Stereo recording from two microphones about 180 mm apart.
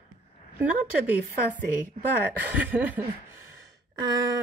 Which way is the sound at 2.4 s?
10° right (ahead or behind).